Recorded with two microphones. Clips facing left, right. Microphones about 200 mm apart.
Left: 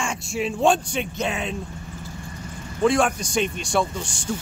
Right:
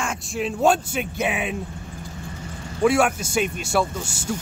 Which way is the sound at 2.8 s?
5° right (ahead or behind).